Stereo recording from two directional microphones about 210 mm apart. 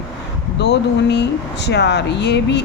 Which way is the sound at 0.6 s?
55° left (ahead or behind).